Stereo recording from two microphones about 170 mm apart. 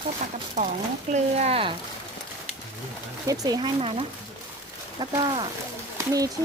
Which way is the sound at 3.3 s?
20° right (ahead or behind).